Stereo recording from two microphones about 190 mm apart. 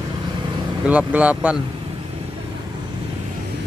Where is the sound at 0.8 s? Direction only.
10° right (ahead or behind).